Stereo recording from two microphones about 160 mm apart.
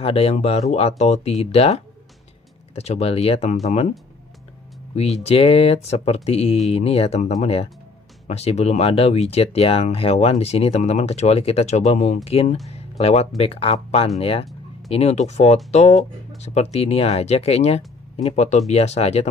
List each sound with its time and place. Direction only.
0.0 s speech: 40° left (ahead or behind)
4.9 s speech: 40° left (ahead or behind)